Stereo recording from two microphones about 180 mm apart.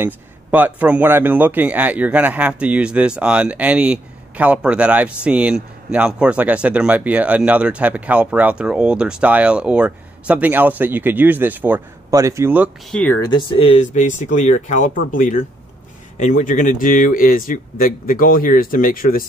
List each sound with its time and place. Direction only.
0.0 s speech: 10° right (ahead or behind)
12.9 s speech: 10° left (ahead or behind)
13.3 s speech: 30° left (ahead or behind); by 19.2 s 50° left (ahead or behind)